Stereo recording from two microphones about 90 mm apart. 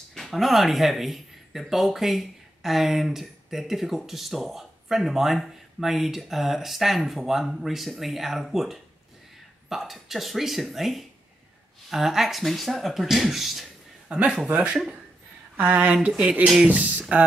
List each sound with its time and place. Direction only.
0.1 s speech: centre (ahead or behind); by 16.1 s 15° right (ahead or behind)
16.1 s speech: 5° right (ahead or behind)
16.6 s speech: 15° right (ahead or behind)